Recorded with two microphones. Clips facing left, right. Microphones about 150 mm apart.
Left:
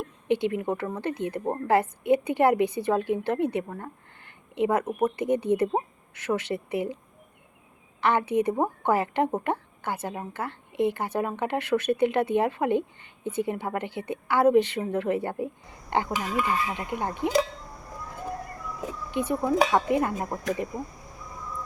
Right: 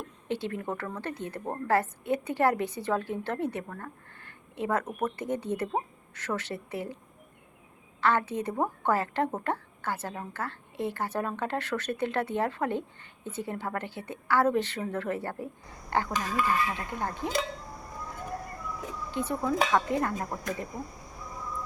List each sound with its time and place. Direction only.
0.0 s speech: 15° left (ahead or behind)
8.0 s speech: 15° left (ahead or behind)
19.1 s speech: 15° left (ahead or behind)